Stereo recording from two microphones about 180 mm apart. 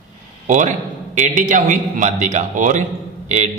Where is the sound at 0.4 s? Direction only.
45° right (ahead or behind).